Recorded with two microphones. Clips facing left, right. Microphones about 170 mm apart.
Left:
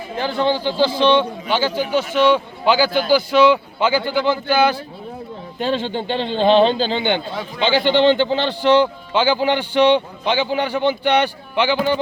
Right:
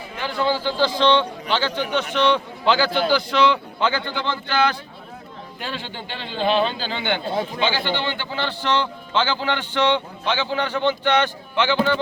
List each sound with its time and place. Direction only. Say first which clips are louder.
0.2 s a man's voice: left 3 dB; 25° left (ahead or behind); by 4.8 s 10° left (ahead or behind)
5.5 s a man's voice: left 11 dB; 20° left (ahead or behind)